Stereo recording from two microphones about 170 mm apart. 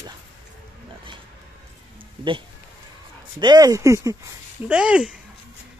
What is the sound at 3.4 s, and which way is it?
Speech, 25° right (ahead or behind).